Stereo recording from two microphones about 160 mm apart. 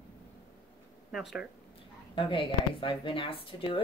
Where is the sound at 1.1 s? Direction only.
Centre (ahead or behind).